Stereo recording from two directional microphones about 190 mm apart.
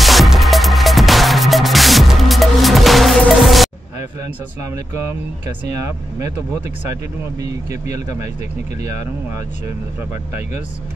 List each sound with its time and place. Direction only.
0.0 s music: centre (ahead or behind)
5.7 s speech: 15° right (ahead or behind)
7.9 s speech: 15° right (ahead or behind)